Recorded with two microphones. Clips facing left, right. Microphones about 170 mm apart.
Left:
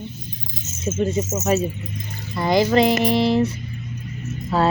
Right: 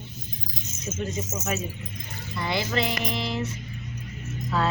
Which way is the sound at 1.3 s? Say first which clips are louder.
Left 10 dB; 35° left (ahead or behind).